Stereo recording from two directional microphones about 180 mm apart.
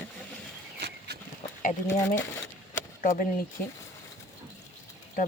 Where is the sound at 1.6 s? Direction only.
45° left (ahead or behind).